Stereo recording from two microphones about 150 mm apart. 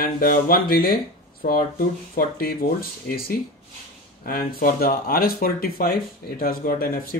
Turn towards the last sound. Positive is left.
turn(degrees=70)  # may be behind; listen again after turning